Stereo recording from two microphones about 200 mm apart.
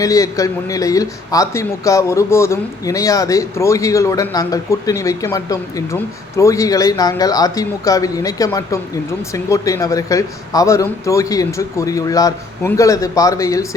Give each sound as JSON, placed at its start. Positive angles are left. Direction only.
{"t": 0.0, "sound": "a man's voice", "side_deg": 15}